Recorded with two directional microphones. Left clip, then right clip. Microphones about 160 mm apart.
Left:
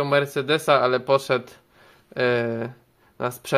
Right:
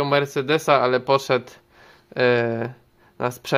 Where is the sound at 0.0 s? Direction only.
15° right (ahead or behind).